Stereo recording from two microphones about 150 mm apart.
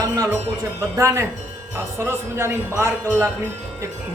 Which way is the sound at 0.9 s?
20° right (ahead or behind).